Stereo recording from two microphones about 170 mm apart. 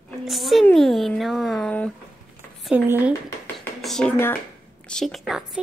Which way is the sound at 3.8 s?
5° left (ahead or behind).